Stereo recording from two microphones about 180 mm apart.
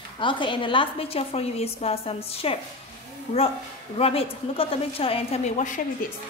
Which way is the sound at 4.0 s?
30° left (ahead or behind).